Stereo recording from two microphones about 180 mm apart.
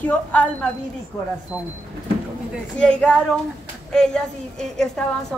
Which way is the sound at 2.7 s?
5° left (ahead or behind).